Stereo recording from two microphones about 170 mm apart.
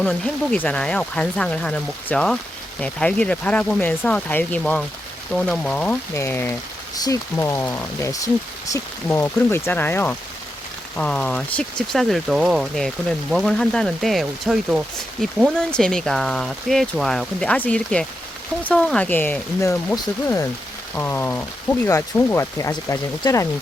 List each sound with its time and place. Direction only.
0.0 s speech: 10° left (ahead or behind)